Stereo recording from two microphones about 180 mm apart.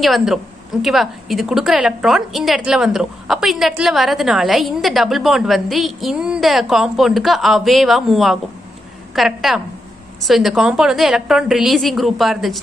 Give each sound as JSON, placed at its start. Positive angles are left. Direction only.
{"t": 0.0, "sound": "a woman's voice", "side_deg": 0}